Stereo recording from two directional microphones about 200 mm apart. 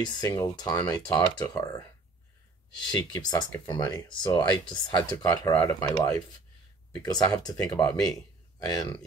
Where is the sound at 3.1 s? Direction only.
20° left (ahead or behind).